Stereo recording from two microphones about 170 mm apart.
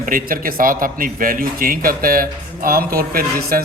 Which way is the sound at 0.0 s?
55° right (ahead or behind).